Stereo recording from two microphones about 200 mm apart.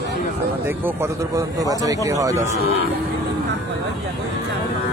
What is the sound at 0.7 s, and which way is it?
Speech, 10° right (ahead or behind).